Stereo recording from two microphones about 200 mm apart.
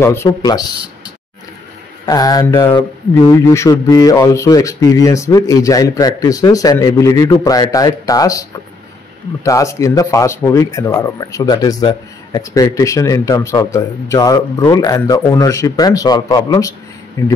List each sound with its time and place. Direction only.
0.0 s speech: 10° left (ahead or behind)
2.0 s speech: 20° left (ahead or behind)